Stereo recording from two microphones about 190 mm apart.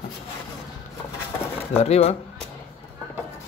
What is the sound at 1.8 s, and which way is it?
Speech, 35° left (ahead or behind).